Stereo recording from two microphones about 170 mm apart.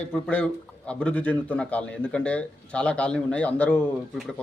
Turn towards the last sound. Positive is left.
turn(degrees=10)  # may be behind; listen again after turning